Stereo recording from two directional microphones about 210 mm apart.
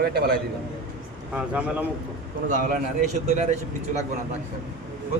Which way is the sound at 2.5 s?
35° right (ahead or behind).